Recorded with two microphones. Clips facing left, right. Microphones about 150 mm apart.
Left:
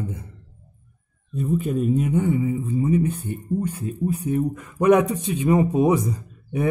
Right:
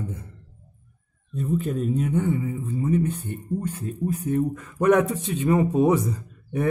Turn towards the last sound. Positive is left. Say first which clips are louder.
# left 1 dB
turn(degrees=10)  # may be behind; listen again after turning